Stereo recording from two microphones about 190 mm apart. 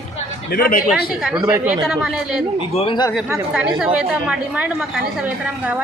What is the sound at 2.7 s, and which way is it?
Speech, 25° left (ahead or behind).